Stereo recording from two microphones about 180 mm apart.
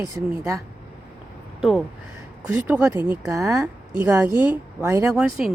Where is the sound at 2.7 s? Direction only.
15° right (ahead or behind).